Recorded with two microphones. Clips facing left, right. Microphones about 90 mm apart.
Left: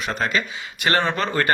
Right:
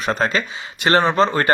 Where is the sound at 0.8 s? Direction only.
25° right (ahead or behind).